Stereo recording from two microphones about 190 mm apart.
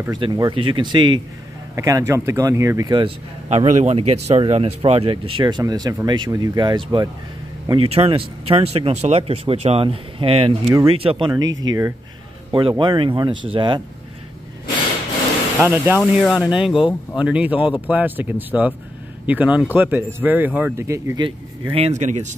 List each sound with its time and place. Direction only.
0.2 s speech: 25° right (ahead or behind)
15.6 s speech: 10° right (ahead or behind)
16.0 s speech: centre (ahead or behind); by 21.3 s 15° right (ahead or behind)
21.6 s speech: 30° right (ahead or behind)